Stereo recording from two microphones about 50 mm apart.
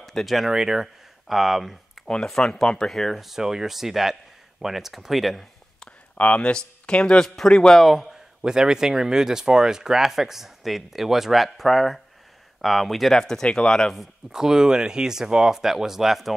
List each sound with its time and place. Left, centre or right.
0.0 s speech: centre
0.5 s speech: centre
2.0 s speech: centre
6.1 s speech: left
7.7 s speech: centre
8.4 s speech: centre
13.2 s speech: centre
14.3 s speech: centre